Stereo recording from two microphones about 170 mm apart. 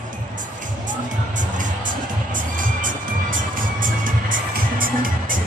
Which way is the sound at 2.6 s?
55° right (ahead or behind).